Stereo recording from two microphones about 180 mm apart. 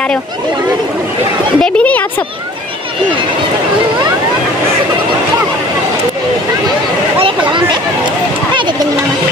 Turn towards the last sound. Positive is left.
turn(degrees=-30)  # may be behind; listen again after turning